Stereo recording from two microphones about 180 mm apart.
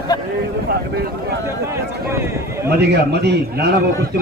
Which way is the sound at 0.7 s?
60° right (ahead or behind).